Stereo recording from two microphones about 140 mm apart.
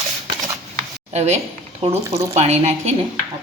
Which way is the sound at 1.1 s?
50° right (ahead or behind).